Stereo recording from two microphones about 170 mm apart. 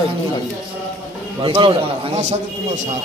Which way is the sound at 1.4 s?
30° right (ahead or behind).